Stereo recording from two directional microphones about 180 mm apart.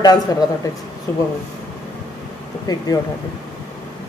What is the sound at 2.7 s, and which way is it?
Speech, 20° left (ahead or behind).